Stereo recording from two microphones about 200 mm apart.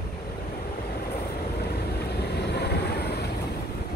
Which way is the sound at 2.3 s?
55° left (ahead or behind).